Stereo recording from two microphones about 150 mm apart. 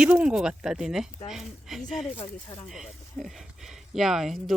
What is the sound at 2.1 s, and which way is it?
Speech, 40° left (ahead or behind).